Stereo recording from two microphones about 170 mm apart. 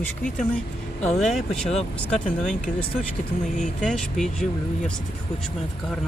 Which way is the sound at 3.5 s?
45° left (ahead or behind).